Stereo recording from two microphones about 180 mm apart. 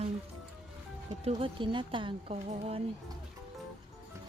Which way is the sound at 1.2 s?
30° right (ahead or behind).